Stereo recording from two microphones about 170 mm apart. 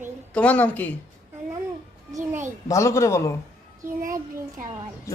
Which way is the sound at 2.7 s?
15° left (ahead or behind).